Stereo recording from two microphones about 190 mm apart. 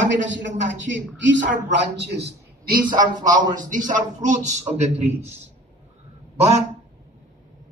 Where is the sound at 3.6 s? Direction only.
45° right (ahead or behind).